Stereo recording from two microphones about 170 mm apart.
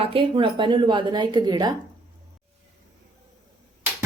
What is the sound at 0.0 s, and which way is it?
A woman's voice, 30° right (ahead or behind).